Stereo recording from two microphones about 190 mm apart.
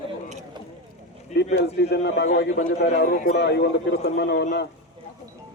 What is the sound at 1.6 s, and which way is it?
A man's voice, 60° left (ahead or behind).